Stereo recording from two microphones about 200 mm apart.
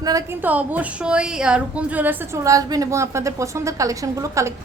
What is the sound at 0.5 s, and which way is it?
A woman's voice, 5° right (ahead or behind).